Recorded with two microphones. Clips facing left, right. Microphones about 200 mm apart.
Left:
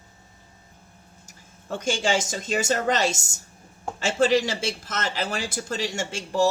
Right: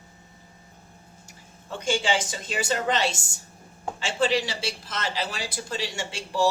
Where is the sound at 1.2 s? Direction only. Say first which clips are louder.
Left 5 dB; 45° left (ahead or behind).